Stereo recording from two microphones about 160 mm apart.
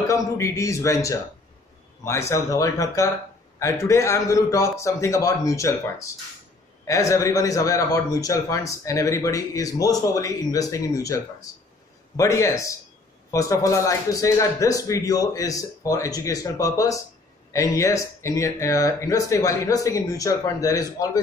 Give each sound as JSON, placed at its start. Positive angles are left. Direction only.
{"t": 0.1, "sound": "speech", "side_deg": 20}